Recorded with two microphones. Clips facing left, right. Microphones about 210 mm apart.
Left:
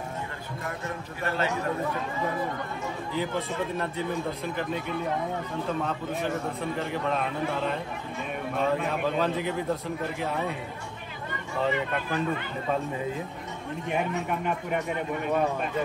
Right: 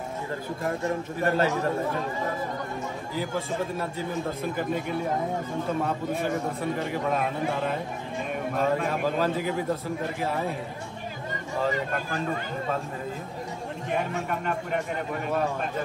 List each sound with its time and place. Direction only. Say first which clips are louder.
1.2 s speech: right 5 dB; 40° right (ahead or behind)
3.2 s a man's voice: right 1 dB; 5° right (ahead or behind)
5.9 s a man's voice: right 2 dB; 5° right (ahead or behind)